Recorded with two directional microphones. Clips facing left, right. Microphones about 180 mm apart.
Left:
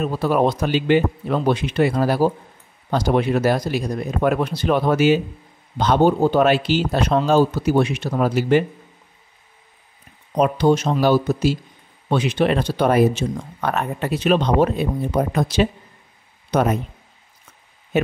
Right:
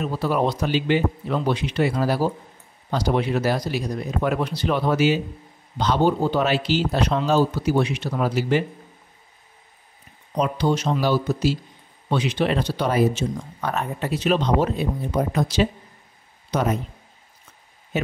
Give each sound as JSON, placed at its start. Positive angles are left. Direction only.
{"t": 0.0, "sound": "speech", "side_deg": 55}
{"t": 10.3, "sound": "speech", "side_deg": 50}